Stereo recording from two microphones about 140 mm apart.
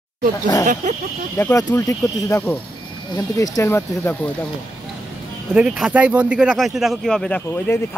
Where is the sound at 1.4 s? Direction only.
20° left (ahead or behind).